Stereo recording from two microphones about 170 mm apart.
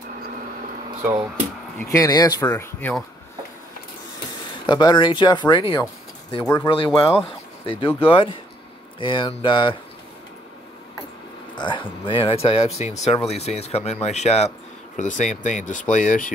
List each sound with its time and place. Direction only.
1.8 s speech: 20° left (ahead or behind)
4.6 s speech: 25° left (ahead or behind)
6.4 s speech: 15° left (ahead or behind)
6.7 s speech: 30° left (ahead or behind)
11.5 s speech: 30° left (ahead or behind); by 16.3 s 50° left (ahead or behind)